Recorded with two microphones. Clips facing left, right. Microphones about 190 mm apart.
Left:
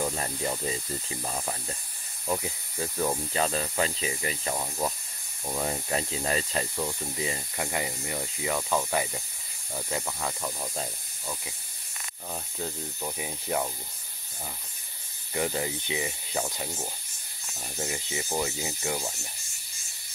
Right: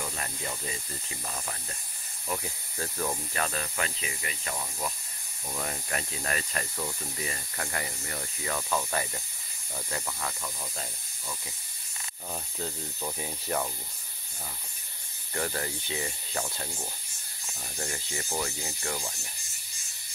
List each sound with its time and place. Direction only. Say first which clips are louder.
0.0 s speech: left 7 dB; 35° left (ahead or behind)
2.2 s speech: left 4 dB; 15° left (ahead or behind)
12.3 s speech: left 1 dB; 5° left (ahead or behind)
15.3 s speech: left 3 dB; 15° left (ahead or behind)